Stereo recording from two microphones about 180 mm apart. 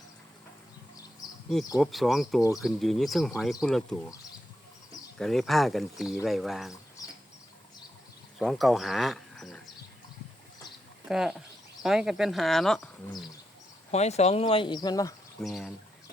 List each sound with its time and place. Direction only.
1.8 s speech: centre (ahead or behind)
5.1 s speech: 5° left (ahead or behind)
8.4 s speech: centre (ahead or behind)
11.1 s speech: 5° right (ahead or behind)
13.9 s speech: 35° left (ahead or behind); by 15.1 s 20° left (ahead or behind)
15.4 s speech: centre (ahead or behind)